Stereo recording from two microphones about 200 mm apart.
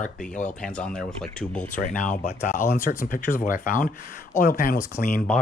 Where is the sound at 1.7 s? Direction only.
40° left (ahead or behind).